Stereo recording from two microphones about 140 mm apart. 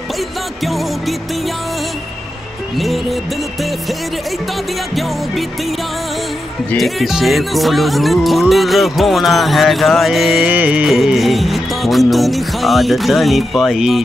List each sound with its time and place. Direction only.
0.7 s speech: centre (ahead or behind)
2.8 s speech: centre (ahead or behind)
6.7 s speech: centre (ahead or behind)